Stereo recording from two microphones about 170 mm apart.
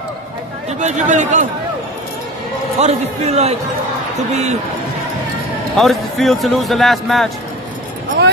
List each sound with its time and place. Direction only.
0.7 s speech: 45° right (ahead or behind)
2.8 s a man's voice: 40° right (ahead or behind)
5.8 s speech: centre (ahead or behind)